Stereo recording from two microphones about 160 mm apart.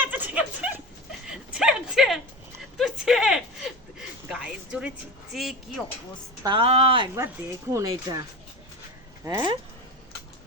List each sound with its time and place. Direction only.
0.0 s a sound: 10° right (ahead or behind)
5.3 s speech: centre (ahead or behind)
6.4 s speech: 30° right (ahead or behind)
7.2 s speech: 20° right (ahead or behind)
9.2 s speech: 20° right (ahead or behind)